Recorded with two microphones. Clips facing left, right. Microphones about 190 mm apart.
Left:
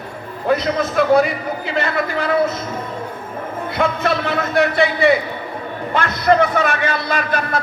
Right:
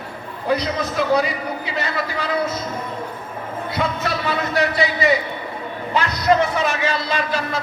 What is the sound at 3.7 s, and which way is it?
A man's voice, 55° left (ahead or behind).